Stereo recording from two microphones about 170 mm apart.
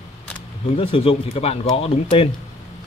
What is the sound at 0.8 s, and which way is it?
Speech, 35° left (ahead or behind).